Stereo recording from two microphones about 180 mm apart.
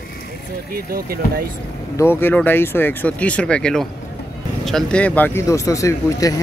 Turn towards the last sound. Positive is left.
turn(degrees=20)  # may be behind; listen again after turning